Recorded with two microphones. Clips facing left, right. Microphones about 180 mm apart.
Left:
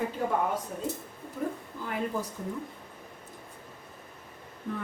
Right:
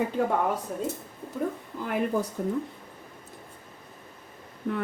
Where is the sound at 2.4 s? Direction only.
65° right (ahead or behind).